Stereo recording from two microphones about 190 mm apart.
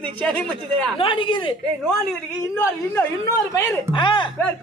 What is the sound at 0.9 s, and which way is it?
Speech, 25° left (ahead or behind).